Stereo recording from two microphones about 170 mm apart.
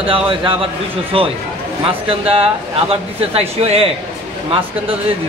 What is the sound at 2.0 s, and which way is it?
Speech, 35° right (ahead or behind).